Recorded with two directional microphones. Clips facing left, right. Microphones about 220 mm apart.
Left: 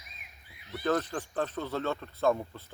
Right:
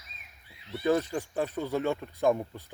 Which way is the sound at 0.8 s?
10° right (ahead or behind).